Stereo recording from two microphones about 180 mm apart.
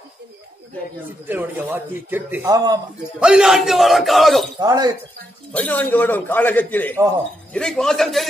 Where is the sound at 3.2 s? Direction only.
5° right (ahead or behind).